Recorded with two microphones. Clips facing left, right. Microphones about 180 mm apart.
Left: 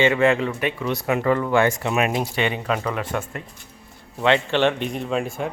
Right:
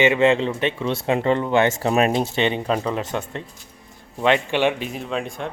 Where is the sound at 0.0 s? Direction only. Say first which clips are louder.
Right 1 dB; 20° right (ahead or behind).